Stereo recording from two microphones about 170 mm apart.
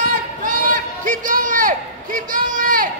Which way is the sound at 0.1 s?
50° right (ahead or behind).